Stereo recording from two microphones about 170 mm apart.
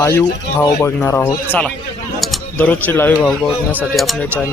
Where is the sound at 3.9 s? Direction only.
Centre (ahead or behind).